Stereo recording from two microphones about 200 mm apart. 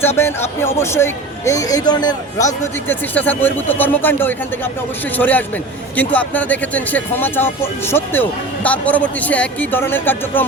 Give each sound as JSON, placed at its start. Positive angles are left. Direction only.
{"t": 0.2, "sound": "speech", "side_deg": 10}
{"t": 2.8, "sound": "speech", "side_deg": 10}